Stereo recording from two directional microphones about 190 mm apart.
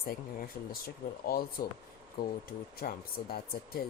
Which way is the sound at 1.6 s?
50° left (ahead or behind).